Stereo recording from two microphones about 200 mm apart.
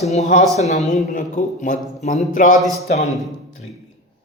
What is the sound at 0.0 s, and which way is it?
Speech, 35° left (ahead or behind).